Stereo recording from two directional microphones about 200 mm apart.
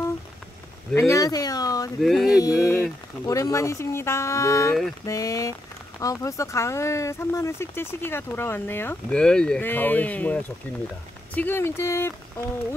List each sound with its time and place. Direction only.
0.9 s speech: 15° left (ahead or behind)
2.0 s a sound: centre (ahead or behind)
2.4 s speech: 15° left (ahead or behind)